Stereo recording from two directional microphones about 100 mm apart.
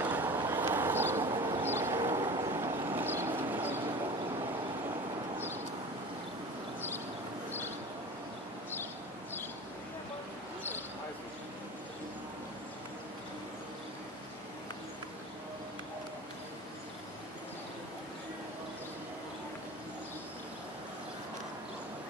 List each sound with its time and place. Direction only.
0.0 s vehicle: 20° right (ahead or behind)